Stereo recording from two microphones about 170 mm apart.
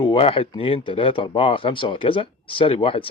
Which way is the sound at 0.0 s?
30° left (ahead or behind).